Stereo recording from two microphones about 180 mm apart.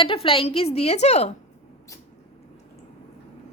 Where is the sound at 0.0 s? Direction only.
30° left (ahead or behind).